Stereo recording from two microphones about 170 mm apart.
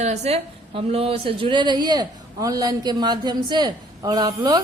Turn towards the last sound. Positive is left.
turn(degrees=-25)  # may be behind; listen again after turning